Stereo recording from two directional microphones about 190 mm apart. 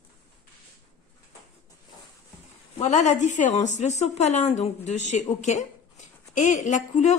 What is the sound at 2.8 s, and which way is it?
A woman's voice, 40° left (ahead or behind).